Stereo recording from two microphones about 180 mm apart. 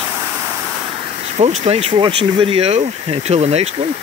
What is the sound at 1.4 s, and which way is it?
Speech, 35° right (ahead or behind).